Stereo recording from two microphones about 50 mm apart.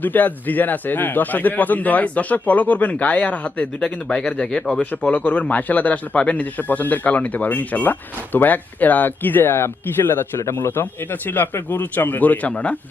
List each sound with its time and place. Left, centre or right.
0.0 s speech: left
3.8 s speech: centre